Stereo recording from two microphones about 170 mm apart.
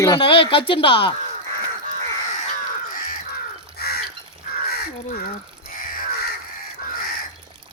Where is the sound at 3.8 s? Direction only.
65° left (ahead or behind).